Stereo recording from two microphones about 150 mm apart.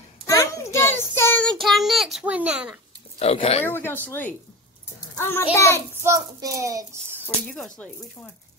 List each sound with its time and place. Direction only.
0.3 s child singing: 20° left (ahead or behind); by 2.8 s 10° right (ahead or behind)
3.2 s speech: 40° left (ahead or behind)
3.6 s speech: 15° left (ahead or behind)
6.0 s a child's voice: 20° right (ahead or behind)
7.4 s speech: 5° left (ahead or behind)